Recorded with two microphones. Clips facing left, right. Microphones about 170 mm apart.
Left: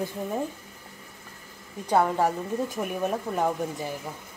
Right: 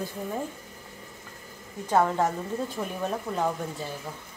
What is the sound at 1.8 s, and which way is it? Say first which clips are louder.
Speech: left 1 dB; 10° left (ahead or behind).